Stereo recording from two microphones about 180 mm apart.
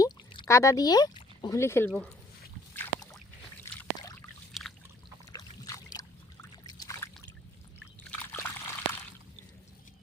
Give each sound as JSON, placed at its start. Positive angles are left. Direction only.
{"t": 0.0, "sound": "pour", "side_deg": 30}
{"t": 0.4, "sound": "speech", "side_deg": 15}
{"t": 1.9, "sound": "speech", "side_deg": 5}
{"t": 2.7, "sound": "boat", "side_deg": 15}
{"t": 3.9, "sound": "a sound", "side_deg": 20}
{"t": 4.5, "sound": "pour", "side_deg": 0}
{"t": 5.3, "sound": "boat", "side_deg": 20}
{"t": 8.1, "sound": "a sound", "side_deg": 10}